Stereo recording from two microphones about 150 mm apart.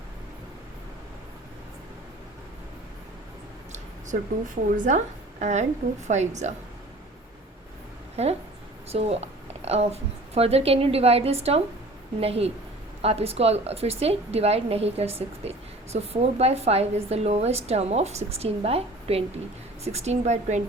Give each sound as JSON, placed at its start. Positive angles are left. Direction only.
{"t": 4.8, "sound": "a woman's voice", "side_deg": -55}
{"t": 8.1, "sound": "a woman's voice", "side_deg": -45}